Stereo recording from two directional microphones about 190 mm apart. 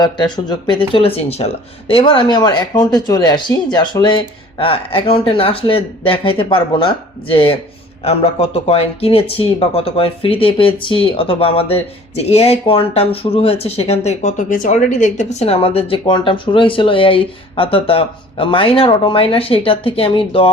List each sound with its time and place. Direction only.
0.0 s speech: 20° left (ahead or behind)